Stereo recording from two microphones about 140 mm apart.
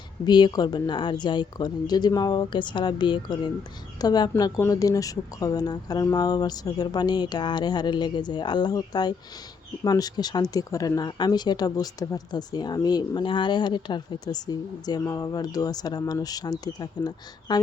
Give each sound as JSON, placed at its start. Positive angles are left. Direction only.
{"t": 0.3, "sound": "a woman's voice", "side_deg": 30}